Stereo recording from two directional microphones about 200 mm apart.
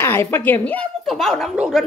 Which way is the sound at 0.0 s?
10° left (ahead or behind).